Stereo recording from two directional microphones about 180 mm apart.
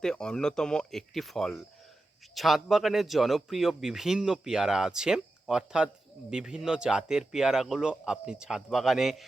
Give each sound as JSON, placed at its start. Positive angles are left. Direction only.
{"t": 0.0, "sound": "a man's voice", "side_deg": 5}